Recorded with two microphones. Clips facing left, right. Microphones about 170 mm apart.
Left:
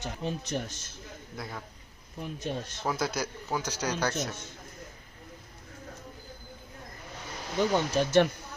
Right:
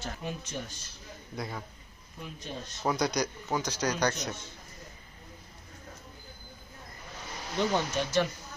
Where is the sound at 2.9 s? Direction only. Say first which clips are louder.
Right 3 dB; 5° left (ahead or behind).